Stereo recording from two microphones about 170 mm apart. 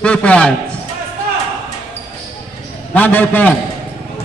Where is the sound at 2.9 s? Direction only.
10° left (ahead or behind).